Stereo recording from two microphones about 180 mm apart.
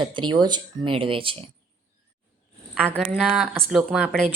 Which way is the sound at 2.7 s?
5° right (ahead or behind).